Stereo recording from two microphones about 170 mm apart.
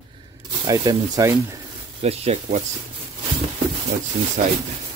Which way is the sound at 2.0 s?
35° right (ahead or behind).